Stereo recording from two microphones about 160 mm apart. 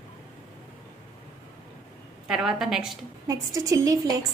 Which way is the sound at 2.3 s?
Centre (ahead or behind).